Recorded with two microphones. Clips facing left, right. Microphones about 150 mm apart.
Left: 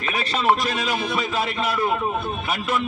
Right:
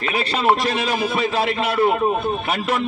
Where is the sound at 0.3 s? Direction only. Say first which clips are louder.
Right 1 dB; 30° right (ahead or behind).